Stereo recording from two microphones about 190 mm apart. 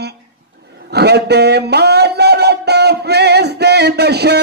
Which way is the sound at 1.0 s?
60° right (ahead or behind).